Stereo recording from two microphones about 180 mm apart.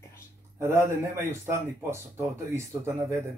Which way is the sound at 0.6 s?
15° right (ahead or behind).